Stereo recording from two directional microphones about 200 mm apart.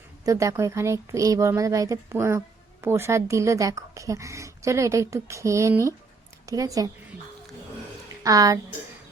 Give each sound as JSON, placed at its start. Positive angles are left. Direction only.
{"t": 0.3, "sound": "a woman's voice", "side_deg": -15}
{"t": 8.2, "sound": "speech", "side_deg": -15}